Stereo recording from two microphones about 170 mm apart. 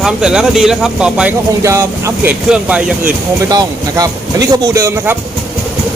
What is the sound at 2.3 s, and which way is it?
Speech, 5° right (ahead or behind).